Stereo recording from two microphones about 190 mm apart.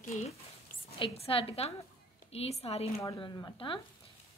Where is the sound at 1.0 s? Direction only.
30° left (ahead or behind).